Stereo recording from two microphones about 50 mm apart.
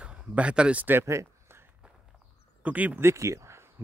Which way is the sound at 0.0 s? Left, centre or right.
Right.